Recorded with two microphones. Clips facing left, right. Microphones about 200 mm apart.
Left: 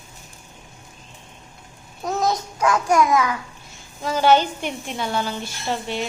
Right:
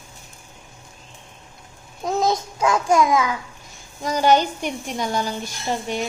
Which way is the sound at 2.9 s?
25° right (ahead or behind).